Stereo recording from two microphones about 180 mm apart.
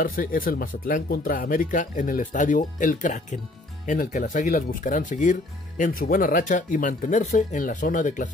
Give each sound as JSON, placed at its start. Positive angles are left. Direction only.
{"t": 0.0, "sound": "speech", "side_deg": 50}